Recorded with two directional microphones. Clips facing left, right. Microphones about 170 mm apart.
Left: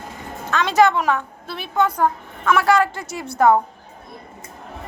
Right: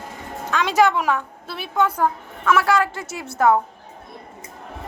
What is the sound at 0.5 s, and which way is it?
A woman's voice, 10° right (ahead or behind).